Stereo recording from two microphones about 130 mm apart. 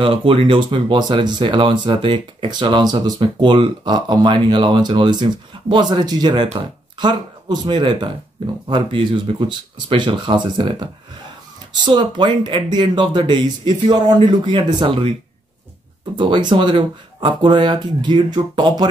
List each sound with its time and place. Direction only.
0.0 s speech: 45° right (ahead or behind)
16.2 s speech: 35° right (ahead or behind)